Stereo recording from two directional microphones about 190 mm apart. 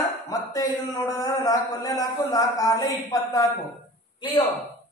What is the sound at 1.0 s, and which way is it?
Speech, 20° left (ahead or behind).